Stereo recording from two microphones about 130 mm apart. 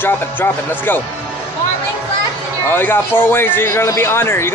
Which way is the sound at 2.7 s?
15° left (ahead or behind).